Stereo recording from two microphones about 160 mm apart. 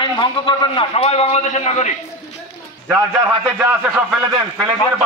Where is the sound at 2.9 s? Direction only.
10° right (ahead or behind).